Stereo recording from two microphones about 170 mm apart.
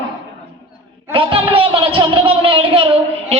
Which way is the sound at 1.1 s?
30° right (ahead or behind).